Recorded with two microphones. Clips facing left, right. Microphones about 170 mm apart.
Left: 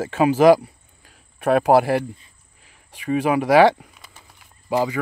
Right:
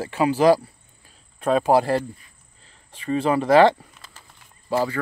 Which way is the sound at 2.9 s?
15° left (ahead or behind).